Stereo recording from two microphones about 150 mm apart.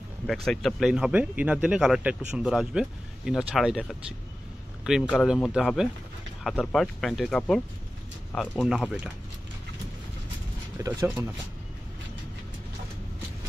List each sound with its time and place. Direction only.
0.3 s speech: centre (ahead or behind)
4.8 s speech: 5° right (ahead or behind)
10.8 s speech: 20° right (ahead or behind)